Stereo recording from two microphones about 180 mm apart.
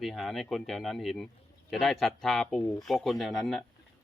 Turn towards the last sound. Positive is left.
turn(degrees=0)  # may be behind; listen again after turning